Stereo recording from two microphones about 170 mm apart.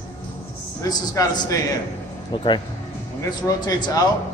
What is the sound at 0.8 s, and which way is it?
A man's voice, 20° left (ahead or behind).